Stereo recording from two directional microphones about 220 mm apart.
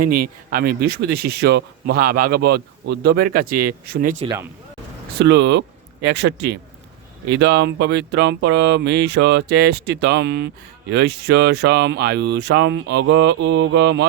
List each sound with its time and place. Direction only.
0.1 s speech: 40° right (ahead or behind)
5.2 s speech: 50° right (ahead or behind)